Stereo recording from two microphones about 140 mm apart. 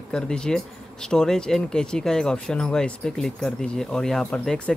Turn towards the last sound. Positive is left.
turn(degrees=5)  # may be behind; listen again after turning